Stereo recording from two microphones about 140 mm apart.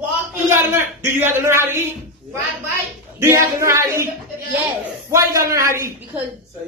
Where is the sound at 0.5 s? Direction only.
20° right (ahead or behind).